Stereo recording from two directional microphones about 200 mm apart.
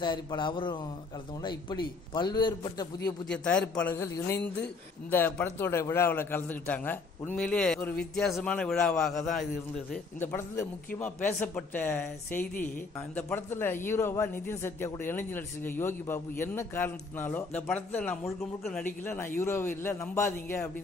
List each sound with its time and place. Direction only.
0.0 s a man's voice: 25° left (ahead or behind)
3.3 s a man's voice: 5° left (ahead or behind)
10.2 s speech: 10° left (ahead or behind)